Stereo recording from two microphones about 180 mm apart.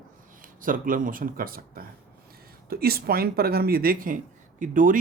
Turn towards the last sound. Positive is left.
turn(degrees=-45)  # may be behind; listen again after turning